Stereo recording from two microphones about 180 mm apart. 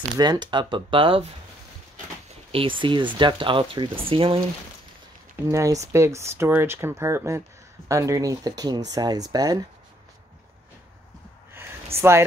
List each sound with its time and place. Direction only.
0.2 s speech: 25° right (ahead or behind)
2.5 s speech: 30° right (ahead or behind)
5.3 s speech: 15° right (ahead or behind)
12.0 s speech: 15° right (ahead or behind)